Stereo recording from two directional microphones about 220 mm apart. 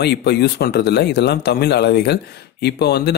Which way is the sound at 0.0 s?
50° left (ahead or behind).